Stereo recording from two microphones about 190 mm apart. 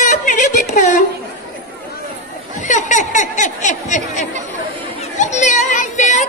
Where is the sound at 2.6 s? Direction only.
40° left (ahead or behind).